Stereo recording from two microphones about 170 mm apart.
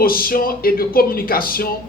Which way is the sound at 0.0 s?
60° left (ahead or behind).